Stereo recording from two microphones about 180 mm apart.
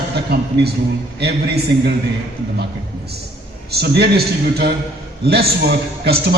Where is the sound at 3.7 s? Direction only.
65° right (ahead or behind).